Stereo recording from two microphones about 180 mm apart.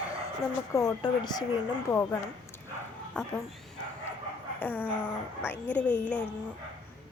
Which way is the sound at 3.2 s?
5° left (ahead or behind).